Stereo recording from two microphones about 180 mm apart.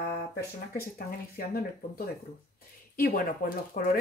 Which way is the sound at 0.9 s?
55° left (ahead or behind).